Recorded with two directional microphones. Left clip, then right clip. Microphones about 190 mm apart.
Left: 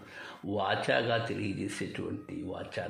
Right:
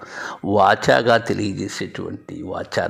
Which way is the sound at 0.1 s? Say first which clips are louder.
Right 16 dB; 45° right (ahead or behind).